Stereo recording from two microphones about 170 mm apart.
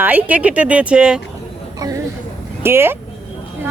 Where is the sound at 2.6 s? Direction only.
15° right (ahead or behind).